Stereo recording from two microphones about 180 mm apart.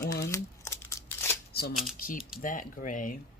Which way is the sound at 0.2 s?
15° left (ahead or behind).